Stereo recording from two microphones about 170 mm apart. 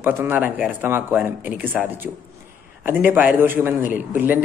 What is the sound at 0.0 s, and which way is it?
A man's voice, 10° right (ahead or behind).